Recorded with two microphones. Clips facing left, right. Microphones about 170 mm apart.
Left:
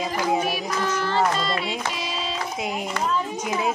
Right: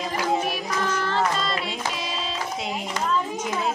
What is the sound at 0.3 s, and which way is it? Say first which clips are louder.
Child singing: even; 5° left (ahead or behind).